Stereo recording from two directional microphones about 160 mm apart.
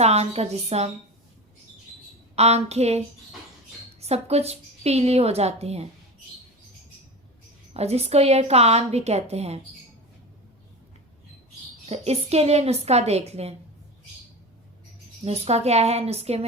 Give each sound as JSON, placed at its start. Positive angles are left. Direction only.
{"t": 0.0, "sound": "a woman's voice", "side_deg": -40}
{"t": 2.3, "sound": "a woman's voice", "side_deg": -40}
{"t": 4.0, "sound": "a woman's voice", "side_deg": -40}
{"t": 7.7, "sound": "a woman's voice", "side_deg": -40}
{"t": 11.9, "sound": "a woman's voice", "side_deg": -40}
{"t": 15.2, "sound": "a woman's voice", "side_deg": -40}